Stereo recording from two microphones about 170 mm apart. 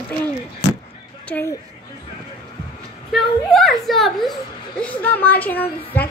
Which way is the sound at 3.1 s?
Centre (ahead or behind).